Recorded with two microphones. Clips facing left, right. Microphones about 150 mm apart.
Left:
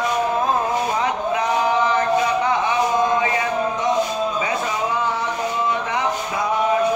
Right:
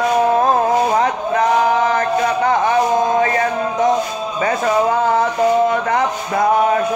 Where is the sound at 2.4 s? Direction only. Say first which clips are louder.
Right 5 dB; 50° right (ahead or behind).